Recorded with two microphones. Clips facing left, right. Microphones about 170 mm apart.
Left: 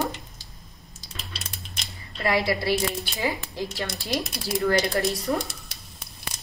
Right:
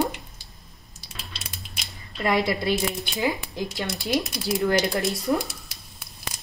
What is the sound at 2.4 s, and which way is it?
A woman's voice, 20° right (ahead or behind).